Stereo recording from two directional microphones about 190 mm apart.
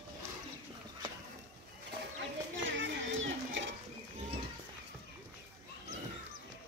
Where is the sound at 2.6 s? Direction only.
85° right.